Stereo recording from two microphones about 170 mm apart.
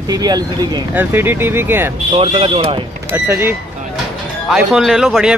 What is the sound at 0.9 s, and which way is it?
Speech, 15° right (ahead or behind).